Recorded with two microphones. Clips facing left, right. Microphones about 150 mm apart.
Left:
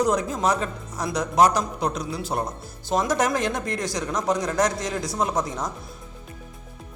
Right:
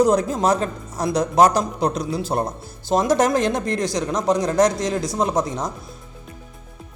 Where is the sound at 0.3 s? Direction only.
35° right (ahead or behind); by 5.7 s 20° right (ahead or behind).